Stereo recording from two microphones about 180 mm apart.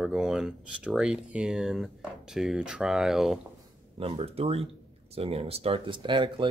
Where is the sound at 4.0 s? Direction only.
30° right (ahead or behind).